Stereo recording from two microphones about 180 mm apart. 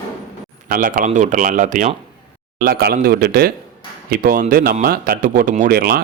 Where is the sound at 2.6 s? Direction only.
60° right (ahead or behind).